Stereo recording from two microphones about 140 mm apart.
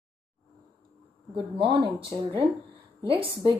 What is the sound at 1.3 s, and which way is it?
Speech, 40° right (ahead or behind).